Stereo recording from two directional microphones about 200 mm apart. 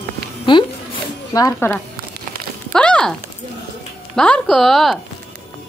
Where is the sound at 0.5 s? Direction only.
25° left (ahead or behind).